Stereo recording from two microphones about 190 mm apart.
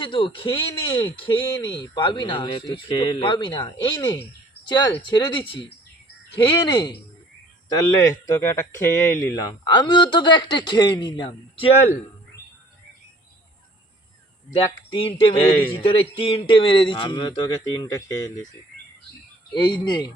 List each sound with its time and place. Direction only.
0.0 s speech: 25° left (ahead or behind)
14.5 s speech: 30° left (ahead or behind)
19.5 s speech: 25° left (ahead or behind)